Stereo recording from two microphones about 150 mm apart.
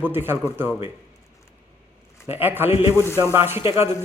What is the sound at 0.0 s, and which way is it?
Speech, 15° right (ahead or behind).